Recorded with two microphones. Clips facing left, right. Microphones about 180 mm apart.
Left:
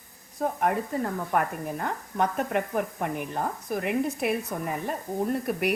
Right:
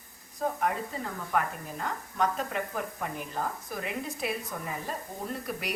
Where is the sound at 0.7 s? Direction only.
60° left (ahead or behind).